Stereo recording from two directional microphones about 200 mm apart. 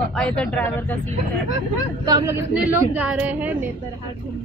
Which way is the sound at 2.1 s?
15° right (ahead or behind).